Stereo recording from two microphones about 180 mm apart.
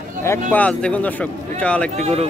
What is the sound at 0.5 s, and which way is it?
Speech, 5° left (ahead or behind).